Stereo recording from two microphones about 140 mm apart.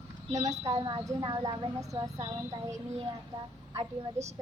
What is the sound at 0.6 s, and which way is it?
Speech, 30° right (ahead or behind).